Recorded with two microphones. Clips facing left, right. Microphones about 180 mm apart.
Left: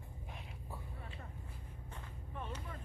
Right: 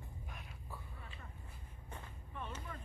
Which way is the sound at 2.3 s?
40° left (ahead or behind).